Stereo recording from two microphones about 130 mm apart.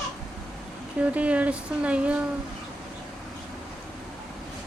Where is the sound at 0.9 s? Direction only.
10° right (ahead or behind).